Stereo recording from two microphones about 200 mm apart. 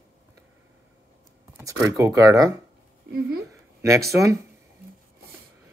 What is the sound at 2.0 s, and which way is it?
Speech, 15° right (ahead or behind).